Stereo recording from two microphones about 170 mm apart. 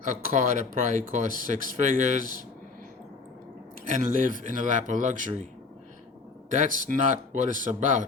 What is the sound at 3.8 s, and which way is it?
Speech, 50° right (ahead or behind).